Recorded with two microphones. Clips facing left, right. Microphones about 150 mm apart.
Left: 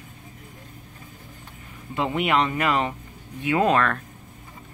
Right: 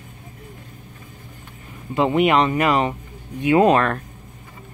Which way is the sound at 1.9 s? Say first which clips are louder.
Right 6 dB; 20° right (ahead or behind).